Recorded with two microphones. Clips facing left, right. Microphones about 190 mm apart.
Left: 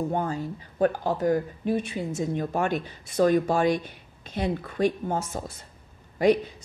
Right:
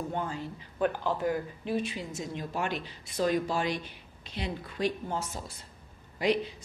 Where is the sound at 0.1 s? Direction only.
45° left (ahead or behind).